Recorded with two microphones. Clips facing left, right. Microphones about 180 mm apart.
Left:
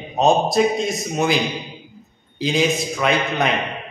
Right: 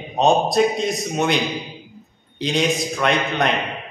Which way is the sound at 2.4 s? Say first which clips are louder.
Left 1 dB; centre (ahead or behind).